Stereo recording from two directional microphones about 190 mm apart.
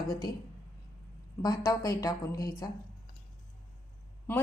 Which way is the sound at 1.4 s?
20° left (ahead or behind).